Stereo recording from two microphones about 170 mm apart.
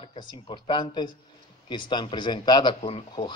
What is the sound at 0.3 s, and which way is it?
A man's voice, 30° left (ahead or behind).